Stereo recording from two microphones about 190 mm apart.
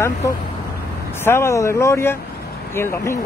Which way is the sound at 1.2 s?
15° left (ahead or behind).